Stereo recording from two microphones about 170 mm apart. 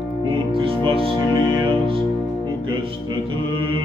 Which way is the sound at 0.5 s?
30° right (ahead or behind).